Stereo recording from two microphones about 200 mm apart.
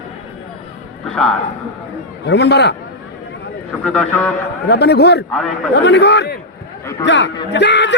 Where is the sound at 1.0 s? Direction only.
5° left (ahead or behind).